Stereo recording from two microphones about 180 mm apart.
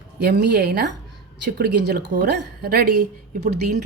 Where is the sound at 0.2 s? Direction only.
65° right (ahead or behind).